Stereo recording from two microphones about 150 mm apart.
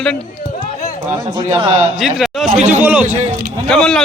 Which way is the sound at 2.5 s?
50° right (ahead or behind).